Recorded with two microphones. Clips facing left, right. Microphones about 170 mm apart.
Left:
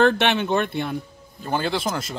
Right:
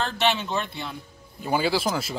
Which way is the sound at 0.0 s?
60° left (ahead or behind).